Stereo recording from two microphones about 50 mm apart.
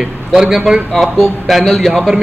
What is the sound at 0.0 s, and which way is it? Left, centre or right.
A man's voice, centre.